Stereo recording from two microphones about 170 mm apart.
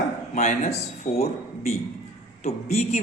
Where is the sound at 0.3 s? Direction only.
45° left (ahead or behind).